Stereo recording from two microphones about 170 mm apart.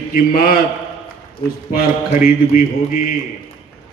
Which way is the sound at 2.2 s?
55° left (ahead or behind).